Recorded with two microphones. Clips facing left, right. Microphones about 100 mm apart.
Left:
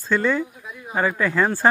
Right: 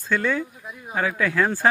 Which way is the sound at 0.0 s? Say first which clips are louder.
Left 3 dB; 15° left (ahead or behind).